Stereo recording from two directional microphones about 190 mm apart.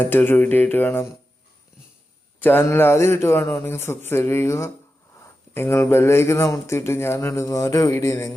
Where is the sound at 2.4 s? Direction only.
10° left (ahead or behind).